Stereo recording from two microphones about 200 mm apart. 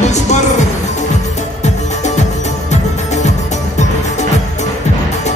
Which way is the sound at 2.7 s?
35° left (ahead or behind).